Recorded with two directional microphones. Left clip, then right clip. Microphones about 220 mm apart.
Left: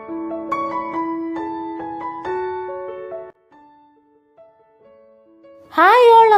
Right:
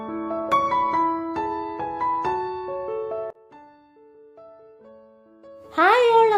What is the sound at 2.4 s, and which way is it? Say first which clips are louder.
Music: left 3 dB; 20° right (ahead or behind).